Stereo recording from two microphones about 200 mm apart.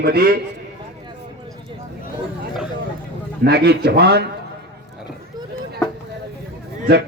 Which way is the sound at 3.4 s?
55° right (ahead or behind).